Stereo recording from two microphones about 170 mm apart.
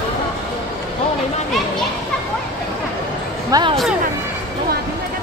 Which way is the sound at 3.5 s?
25° right (ahead or behind).